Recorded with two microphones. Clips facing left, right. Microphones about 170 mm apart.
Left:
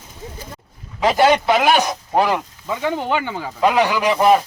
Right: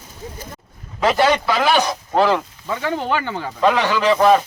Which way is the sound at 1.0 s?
15° left (ahead or behind).